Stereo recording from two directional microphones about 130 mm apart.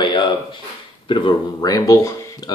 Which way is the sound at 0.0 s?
35° left (ahead or behind).